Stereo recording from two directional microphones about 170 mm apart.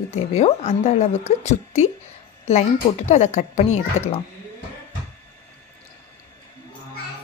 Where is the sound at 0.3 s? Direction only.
35° left (ahead or behind).